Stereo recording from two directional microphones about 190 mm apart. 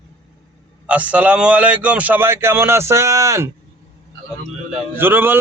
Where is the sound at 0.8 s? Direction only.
10° right (ahead or behind).